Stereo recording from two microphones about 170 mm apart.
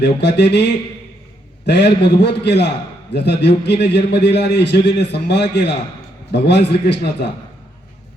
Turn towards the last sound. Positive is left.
turn(degrees=75)  # may be behind; listen again after turning